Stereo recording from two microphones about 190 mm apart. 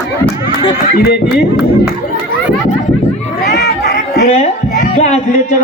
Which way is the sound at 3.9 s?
40° left (ahead or behind).